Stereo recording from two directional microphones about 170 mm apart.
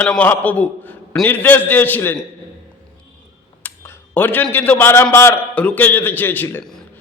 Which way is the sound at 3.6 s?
10° left (ahead or behind).